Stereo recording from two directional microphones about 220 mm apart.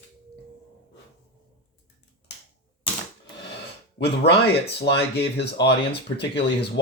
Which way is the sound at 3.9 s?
50° left (ahead or behind).